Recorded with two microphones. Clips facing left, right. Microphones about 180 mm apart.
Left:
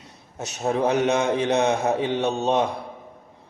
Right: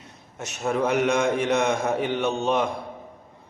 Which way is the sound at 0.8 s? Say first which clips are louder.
Left 1 dB; 30° left (ahead or behind).